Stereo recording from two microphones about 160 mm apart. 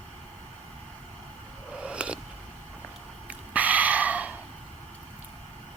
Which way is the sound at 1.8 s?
5° right (ahead or behind).